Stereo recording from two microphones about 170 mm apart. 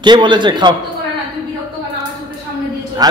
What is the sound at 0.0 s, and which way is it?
Speech, 25° right (ahead or behind).